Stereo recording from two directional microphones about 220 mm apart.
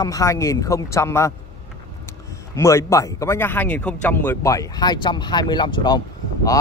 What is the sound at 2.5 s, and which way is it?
Speech, 15° left (ahead or behind).